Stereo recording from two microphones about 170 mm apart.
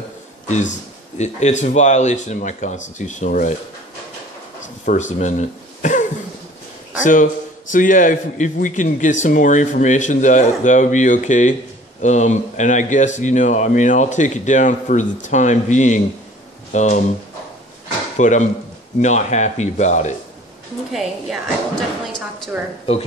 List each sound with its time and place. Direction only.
0.5 s speech: 45° left (ahead or behind)
4.8 s speech: 45° left (ahead or behind)
18.1 s speech: 45° left (ahead or behind)
20.9 s a woman's voice: centre (ahead or behind)